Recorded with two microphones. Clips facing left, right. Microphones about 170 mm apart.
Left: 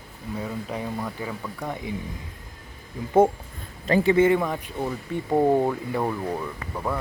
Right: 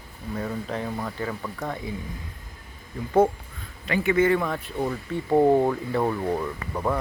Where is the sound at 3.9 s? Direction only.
30° left (ahead or behind).